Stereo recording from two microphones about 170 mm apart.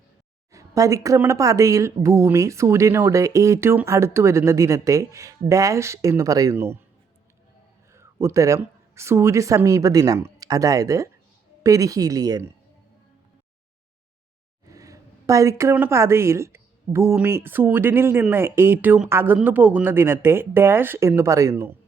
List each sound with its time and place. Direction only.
0.5 s speech: 20° right (ahead or behind)
7.9 s speech: 15° right (ahead or behind)
14.7 s speech: 20° right (ahead or behind)